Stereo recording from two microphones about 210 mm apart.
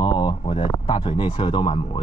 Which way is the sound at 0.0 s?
20° left (ahead or behind).